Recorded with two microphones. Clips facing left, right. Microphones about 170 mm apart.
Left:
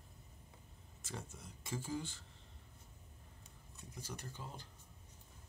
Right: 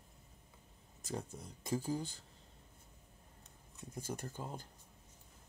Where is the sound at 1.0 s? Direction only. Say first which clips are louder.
Right 6 dB; 40° right (ahead or behind).